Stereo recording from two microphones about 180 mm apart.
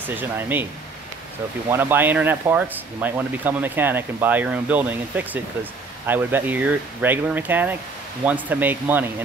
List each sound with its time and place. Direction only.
0.1 s speech: 10° right (ahead or behind)
1.7 s speech: 10° right (ahead or behind)